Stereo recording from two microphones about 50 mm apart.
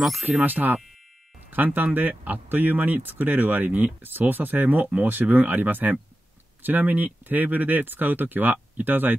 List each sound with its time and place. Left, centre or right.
0.2 s speech: right